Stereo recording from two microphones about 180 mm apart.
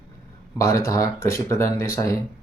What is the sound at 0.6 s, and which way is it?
Speech, 15° left (ahead or behind).